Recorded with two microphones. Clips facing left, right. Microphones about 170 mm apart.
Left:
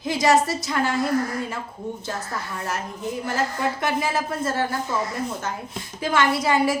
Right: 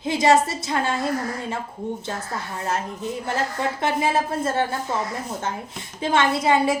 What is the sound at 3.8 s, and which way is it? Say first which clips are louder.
Speech: right 6 dB; 25° right (ahead or behind).